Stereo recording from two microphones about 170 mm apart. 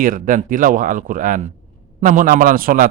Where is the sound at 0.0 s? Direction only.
50° right (ahead or behind).